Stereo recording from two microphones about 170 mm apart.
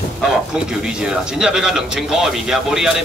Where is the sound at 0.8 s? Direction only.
5° right (ahead or behind).